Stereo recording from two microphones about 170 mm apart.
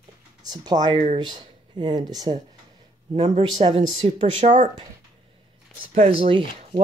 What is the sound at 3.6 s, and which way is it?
Speech, 35° right (ahead or behind).